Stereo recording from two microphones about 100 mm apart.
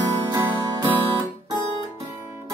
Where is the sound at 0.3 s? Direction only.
20° right (ahead or behind).